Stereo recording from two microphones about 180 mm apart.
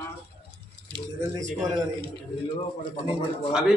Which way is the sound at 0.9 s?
20° right (ahead or behind).